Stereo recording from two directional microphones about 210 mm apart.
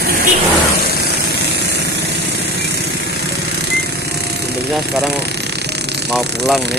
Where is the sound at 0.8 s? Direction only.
50° left (ahead or behind).